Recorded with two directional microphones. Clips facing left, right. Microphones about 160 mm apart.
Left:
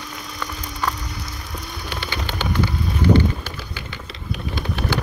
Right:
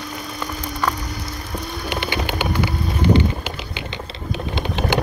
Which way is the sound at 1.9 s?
15° right (ahead or behind).